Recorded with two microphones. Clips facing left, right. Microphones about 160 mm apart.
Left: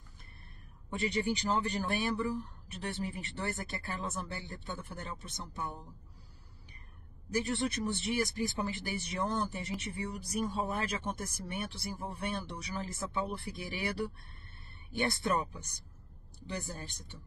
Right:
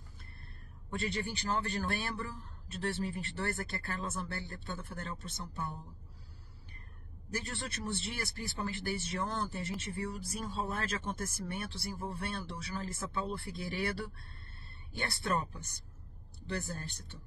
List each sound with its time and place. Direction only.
0.9 s a man's voice: 15° left (ahead or behind)
7.3 s a man's voice: 15° left (ahead or behind)
15.0 s a man's voice: 15° left (ahead or behind)